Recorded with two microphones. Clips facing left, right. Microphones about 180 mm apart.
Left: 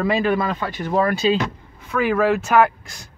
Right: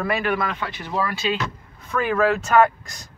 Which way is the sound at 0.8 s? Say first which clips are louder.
Left 7 dB; 50° left (ahead or behind).